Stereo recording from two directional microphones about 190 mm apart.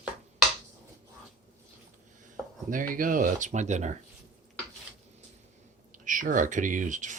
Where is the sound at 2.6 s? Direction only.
45° right (ahead or behind).